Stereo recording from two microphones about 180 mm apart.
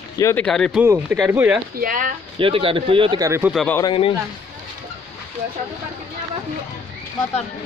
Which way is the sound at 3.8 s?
25° left (ahead or behind).